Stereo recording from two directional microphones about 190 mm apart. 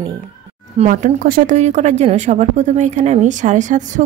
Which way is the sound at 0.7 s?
40° right (ahead or behind).